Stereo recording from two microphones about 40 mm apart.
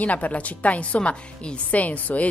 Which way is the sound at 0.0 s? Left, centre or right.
Left.